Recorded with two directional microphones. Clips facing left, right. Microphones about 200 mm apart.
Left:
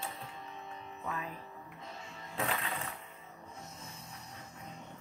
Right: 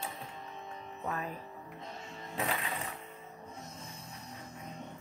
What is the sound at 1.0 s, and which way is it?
Speech, 45° right (ahead or behind).